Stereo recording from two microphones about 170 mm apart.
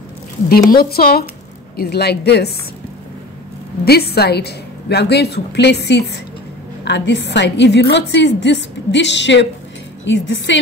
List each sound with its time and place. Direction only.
0.5 s a woman's voice: 65° left (ahead or behind)
3.8 s a woman's voice: 70° left (ahead or behind)
6.8 s a woman's voice: 90° left